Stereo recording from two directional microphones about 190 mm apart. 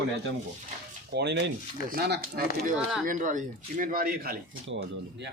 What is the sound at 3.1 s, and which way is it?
Speech, 40° right (ahead or behind).